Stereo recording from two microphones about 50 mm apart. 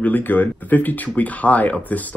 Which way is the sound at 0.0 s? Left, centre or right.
Left.